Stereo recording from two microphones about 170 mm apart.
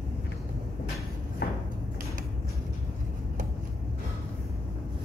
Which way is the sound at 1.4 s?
70° left (ahead or behind).